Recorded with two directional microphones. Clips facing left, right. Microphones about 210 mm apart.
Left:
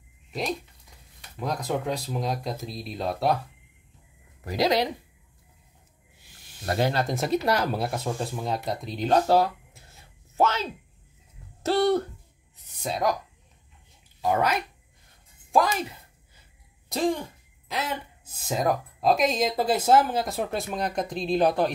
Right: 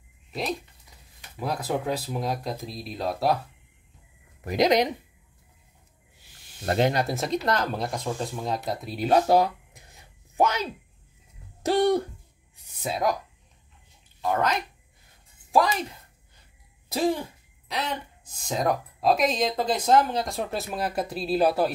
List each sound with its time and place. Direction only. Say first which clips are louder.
0.3 s speech: even; centre (ahead or behind)
4.5 s speech: right 2 dB; 20° right (ahead or behind)
6.6 s speech: right 2 dB; 25° right (ahead or behind)
6.9 s speech: right 1 dB; 15° right (ahead or behind)
7.2 s speech: left 2 dB; 5° left (ahead or behind)
14.2 s speech: left 1 dB; 10° left (ahead or behind)
16.9 s speech: right 1 dB; 5° right (ahead or behind)